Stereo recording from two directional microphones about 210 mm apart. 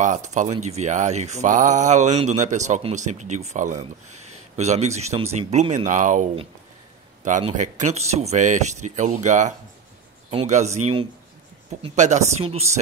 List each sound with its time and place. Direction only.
0.0 s speech: 35° right (ahead or behind)
7.2 s speech: 35° right (ahead or behind)